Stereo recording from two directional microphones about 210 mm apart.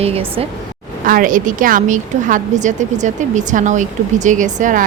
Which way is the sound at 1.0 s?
40° right (ahead or behind).